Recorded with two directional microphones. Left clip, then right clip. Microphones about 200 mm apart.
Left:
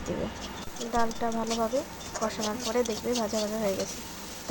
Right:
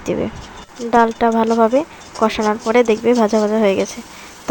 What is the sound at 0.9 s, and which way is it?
Speech, 35° right (ahead or behind).